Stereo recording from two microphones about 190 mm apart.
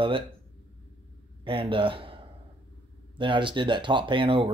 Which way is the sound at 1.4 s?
30° right (ahead or behind).